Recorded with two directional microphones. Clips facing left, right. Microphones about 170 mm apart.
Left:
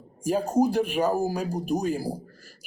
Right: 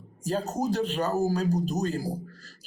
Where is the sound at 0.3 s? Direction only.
10° left (ahead or behind).